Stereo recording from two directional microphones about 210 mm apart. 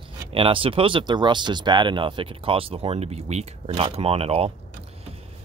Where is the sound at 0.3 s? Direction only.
25° right (ahead or behind).